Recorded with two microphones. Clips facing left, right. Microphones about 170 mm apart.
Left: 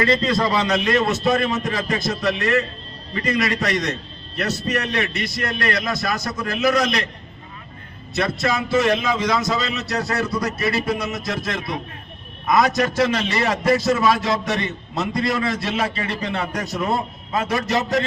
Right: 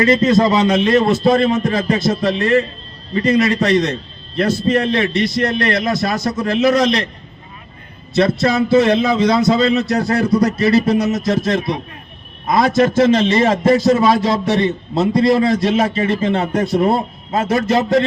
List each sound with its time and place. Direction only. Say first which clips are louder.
0.0 s a man's voice: right 7 dB; 20° right (ahead or behind)
8.1 s a man's voice: right 7 dB; 30° right (ahead or behind)